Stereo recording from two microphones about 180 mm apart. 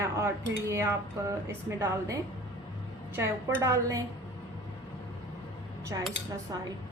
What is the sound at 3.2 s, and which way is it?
Speech, 15° right (ahead or behind).